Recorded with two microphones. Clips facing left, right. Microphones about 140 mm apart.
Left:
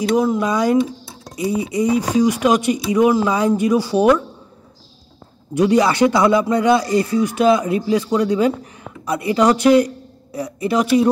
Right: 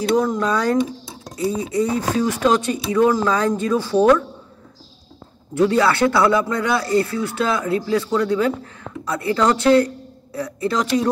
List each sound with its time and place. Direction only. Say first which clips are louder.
0.1 s speech: left 1 dB; 10° left (ahead or behind)
5.5 s speech: left 2 dB; 15° left (ahead or behind)